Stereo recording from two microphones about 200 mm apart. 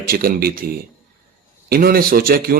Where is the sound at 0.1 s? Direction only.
45° right (ahead or behind).